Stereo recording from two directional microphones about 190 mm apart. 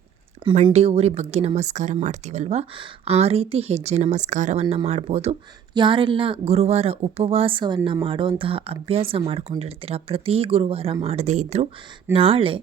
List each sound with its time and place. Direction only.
0.4 s speech: 30° right (ahead or behind)
4.6 s speech: 20° right (ahead or behind)
4.9 s speech: 35° right (ahead or behind)